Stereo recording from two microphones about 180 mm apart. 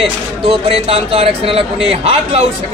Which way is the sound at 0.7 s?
35° right (ahead or behind).